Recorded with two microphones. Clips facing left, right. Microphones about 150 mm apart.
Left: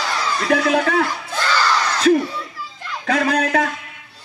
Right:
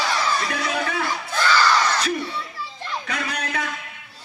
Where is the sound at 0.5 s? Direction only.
90° left.